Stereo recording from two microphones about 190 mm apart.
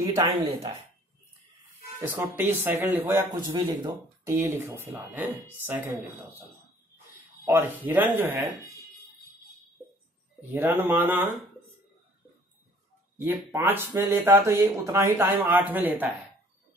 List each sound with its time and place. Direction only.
0.0 s speech: 15° right (ahead or behind)
2.0 s speech: 10° right (ahead or behind)
7.4 s speech: 10° right (ahead or behind)
10.5 s speech: 10° right (ahead or behind)
13.2 s speech: 10° right (ahead or behind)